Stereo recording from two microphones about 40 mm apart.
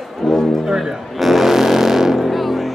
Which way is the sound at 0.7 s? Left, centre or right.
Centre.